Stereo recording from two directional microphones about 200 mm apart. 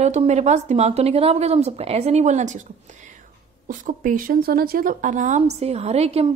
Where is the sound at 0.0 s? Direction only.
35° right (ahead or behind).